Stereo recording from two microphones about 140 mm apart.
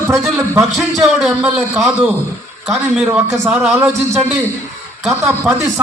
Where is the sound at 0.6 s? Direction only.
Centre (ahead or behind).